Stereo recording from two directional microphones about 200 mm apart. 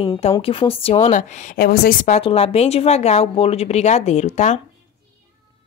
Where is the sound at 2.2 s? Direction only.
30° left (ahead or behind).